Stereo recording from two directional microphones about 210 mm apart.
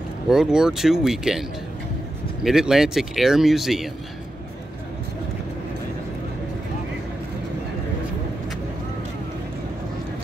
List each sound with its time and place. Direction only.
0.3 s speech: 5° right (ahead or behind)
2.4 s speech: centre (ahead or behind)